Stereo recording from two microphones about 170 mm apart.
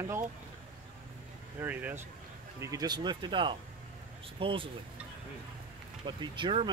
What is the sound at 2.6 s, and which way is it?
Speech, 20° right (ahead or behind).